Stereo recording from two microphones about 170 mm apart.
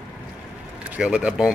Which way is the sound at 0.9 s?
5° right (ahead or behind).